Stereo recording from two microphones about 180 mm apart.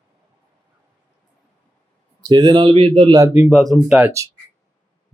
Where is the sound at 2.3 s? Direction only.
25° right (ahead or behind).